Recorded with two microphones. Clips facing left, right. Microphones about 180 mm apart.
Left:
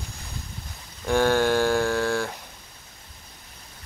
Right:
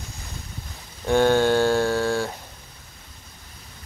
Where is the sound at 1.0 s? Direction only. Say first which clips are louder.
Right 3 dB; 20° right (ahead or behind).